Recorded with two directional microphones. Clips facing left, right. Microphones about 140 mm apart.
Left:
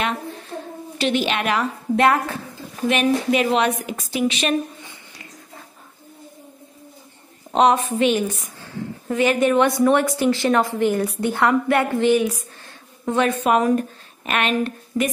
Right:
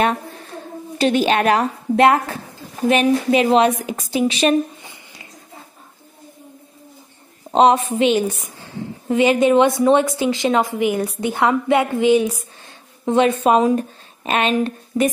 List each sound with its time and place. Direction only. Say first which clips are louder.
0.9 s a woman's voice: right 5 dB; 40° right (ahead or behind)
7.5 s a woman's voice: right 3 dB; 30° right (ahead or behind)
13.7 s a sound: even; 30° right (ahead or behind)
14.9 s speech: right 4 dB; 15° right (ahead or behind)